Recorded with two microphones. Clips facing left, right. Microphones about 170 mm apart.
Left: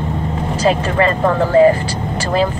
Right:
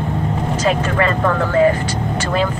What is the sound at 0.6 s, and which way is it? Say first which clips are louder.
Vehicle: left 3 dB; 35° left (ahead or behind).